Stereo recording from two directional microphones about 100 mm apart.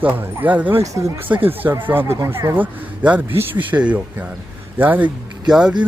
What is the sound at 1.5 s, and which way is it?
Speech, 20° right (ahead or behind).